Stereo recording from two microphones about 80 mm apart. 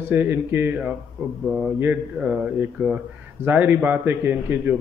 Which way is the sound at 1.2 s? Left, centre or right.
Right.